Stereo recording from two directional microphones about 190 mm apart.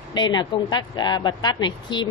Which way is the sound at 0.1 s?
25° left (ahead or behind).